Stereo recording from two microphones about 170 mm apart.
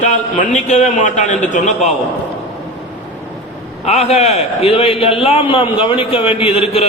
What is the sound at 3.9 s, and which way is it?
A man's voice, 40° left (ahead or behind).